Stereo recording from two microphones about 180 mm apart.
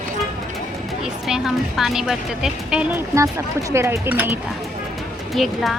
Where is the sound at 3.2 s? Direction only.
15° right (ahead or behind).